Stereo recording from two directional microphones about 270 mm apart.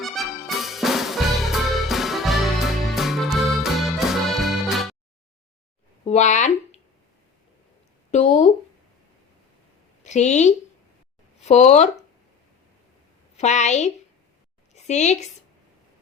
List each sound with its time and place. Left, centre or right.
0.0 s music: centre
6.1 s speech: left
8.1 s a woman's voice: left
10.0 s a woman's voice: left
13.3 s a woman's voice: left